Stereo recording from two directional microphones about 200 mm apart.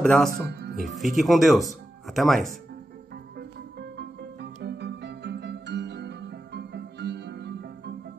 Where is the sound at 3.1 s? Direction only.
55° right (ahead or behind).